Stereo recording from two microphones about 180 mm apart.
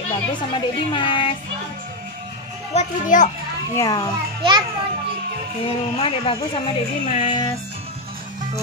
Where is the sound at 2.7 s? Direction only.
45° left (ahead or behind).